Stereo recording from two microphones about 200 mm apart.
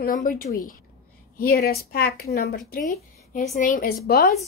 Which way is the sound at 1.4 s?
50° left (ahead or behind).